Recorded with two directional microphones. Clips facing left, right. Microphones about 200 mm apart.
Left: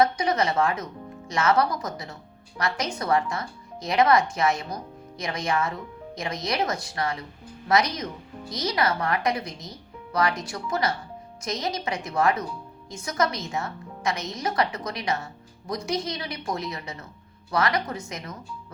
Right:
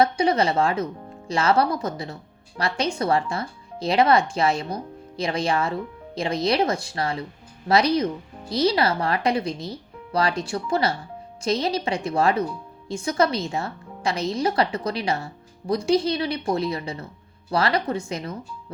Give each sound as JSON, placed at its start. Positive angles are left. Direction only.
{"t": 0.0, "sound": "speech", "side_deg": -30}